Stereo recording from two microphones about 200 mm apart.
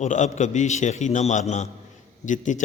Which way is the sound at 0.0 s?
35° left (ahead or behind).